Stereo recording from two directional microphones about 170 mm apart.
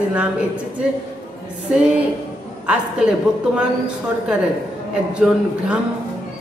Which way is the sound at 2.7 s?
5° right (ahead or behind).